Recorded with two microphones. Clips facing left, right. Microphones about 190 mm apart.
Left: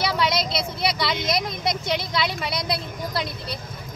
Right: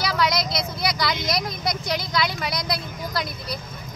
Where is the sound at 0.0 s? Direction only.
25° left (ahead or behind).